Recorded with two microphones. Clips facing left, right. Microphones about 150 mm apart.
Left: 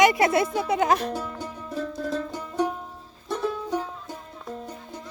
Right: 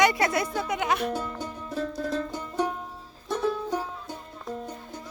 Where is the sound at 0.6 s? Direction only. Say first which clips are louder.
Left 4 dB; 30° left (ahead or behind).